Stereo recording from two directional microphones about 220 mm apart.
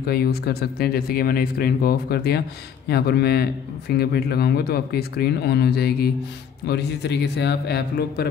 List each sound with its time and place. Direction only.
0.0 s speech: 45° left (ahead or behind)